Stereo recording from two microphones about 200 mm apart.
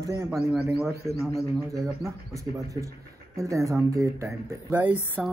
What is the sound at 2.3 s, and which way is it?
Speech, 15° right (ahead or behind).